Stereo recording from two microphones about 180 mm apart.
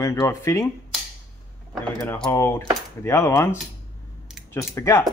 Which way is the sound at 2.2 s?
15° left (ahead or behind).